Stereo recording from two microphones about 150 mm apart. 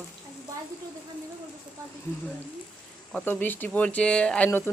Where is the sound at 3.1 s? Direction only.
10° left (ahead or behind).